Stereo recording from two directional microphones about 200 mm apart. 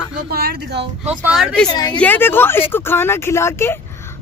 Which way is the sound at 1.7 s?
20° left (ahead or behind).